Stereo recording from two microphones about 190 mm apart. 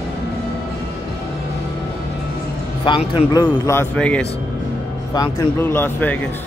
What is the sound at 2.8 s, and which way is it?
A man's voice, 25° left (ahead or behind).